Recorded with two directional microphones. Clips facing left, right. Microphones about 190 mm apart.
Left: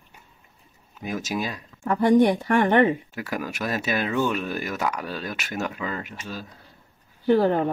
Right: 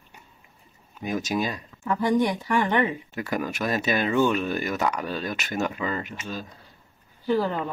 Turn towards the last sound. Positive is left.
turn(degrees=55)  # may be behind; listen again after turning